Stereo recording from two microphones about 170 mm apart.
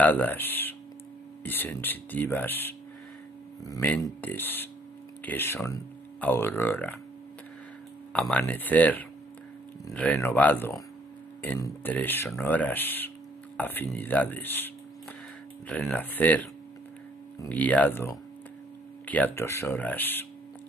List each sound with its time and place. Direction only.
0.0 s speech: 10° left (ahead or behind)
4.2 s speech: 10° left (ahead or behind)
8.1 s speech: 5° left (ahead or behind)
15.7 s speech: 5° left (ahead or behind)